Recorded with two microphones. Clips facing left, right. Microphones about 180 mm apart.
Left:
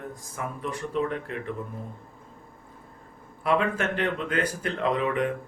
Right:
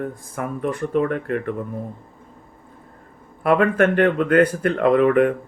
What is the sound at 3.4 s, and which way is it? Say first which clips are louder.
Speech: right 8 dB; 55° right (ahead or behind).